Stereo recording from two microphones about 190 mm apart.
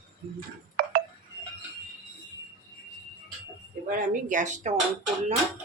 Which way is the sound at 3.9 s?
45° right (ahead or behind).